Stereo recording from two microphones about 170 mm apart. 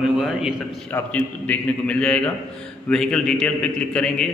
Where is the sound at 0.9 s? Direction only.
10° left (ahead or behind).